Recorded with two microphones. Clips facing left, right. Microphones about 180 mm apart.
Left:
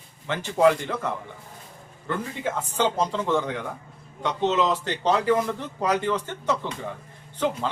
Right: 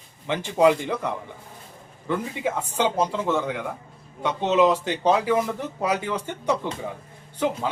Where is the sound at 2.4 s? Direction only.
10° right (ahead or behind).